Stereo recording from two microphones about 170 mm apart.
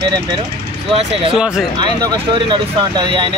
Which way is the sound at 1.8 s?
25° right (ahead or behind).